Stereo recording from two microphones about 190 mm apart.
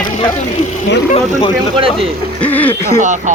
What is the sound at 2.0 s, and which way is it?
Speech, 10° left (ahead or behind).